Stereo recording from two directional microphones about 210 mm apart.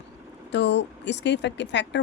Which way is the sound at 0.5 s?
55° left (ahead or behind).